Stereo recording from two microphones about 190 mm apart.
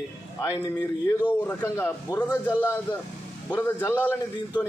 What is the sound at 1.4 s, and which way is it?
A man's voice, 10° left (ahead or behind).